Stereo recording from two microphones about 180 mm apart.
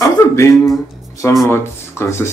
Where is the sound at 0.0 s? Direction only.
15° left (ahead or behind).